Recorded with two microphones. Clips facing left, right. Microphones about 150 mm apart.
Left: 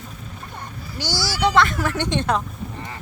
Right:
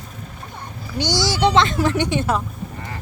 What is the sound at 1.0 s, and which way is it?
Speech, 20° right (ahead or behind).